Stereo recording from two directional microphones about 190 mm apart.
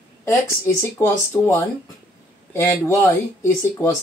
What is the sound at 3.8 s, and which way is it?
Speech, 15° left (ahead or behind).